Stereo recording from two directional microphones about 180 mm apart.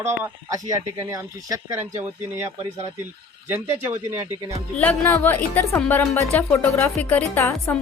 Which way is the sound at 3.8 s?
10° right (ahead or behind).